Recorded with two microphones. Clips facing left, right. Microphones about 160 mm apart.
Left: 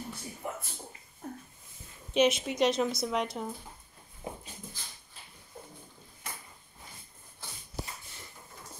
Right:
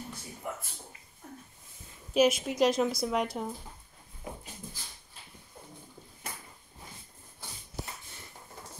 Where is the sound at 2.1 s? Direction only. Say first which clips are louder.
Right 1 dB; centre (ahead or behind).